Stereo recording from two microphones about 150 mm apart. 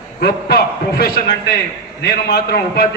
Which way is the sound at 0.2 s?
90° left.